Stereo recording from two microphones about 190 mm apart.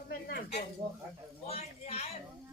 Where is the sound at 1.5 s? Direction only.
30° left (ahead or behind).